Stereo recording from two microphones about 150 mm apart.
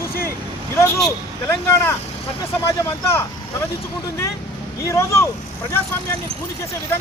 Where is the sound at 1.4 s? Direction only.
15° left (ahead or behind).